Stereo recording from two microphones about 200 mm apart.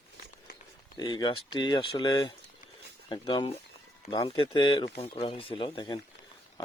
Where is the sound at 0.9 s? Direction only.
20° left (ahead or behind).